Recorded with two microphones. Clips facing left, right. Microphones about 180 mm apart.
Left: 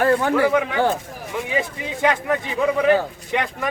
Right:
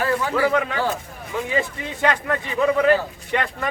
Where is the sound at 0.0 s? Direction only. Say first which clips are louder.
Left 5 dB; 55° left (ahead or behind).